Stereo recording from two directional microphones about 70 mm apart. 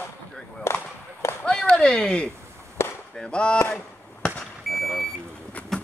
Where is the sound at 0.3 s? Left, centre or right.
Centre.